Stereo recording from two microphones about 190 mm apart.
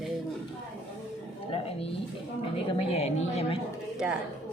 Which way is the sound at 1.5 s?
30° left (ahead or behind).